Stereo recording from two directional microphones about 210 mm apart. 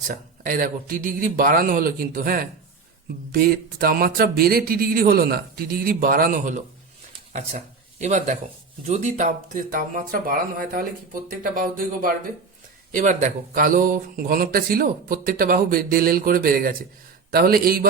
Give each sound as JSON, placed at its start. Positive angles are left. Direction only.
{"t": 0.1, "sound": "speech", "side_deg": -40}